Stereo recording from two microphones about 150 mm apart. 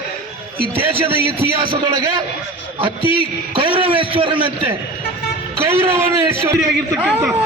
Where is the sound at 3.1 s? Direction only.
35° right (ahead or behind).